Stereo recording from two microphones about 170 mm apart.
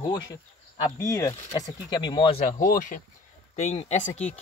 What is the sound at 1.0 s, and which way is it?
Speech, 20° left (ahead or behind).